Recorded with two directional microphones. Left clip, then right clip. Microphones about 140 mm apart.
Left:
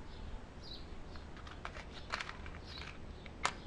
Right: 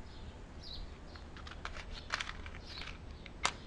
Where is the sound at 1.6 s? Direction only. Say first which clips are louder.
Right 1 dB; 5° left (ahead or behind).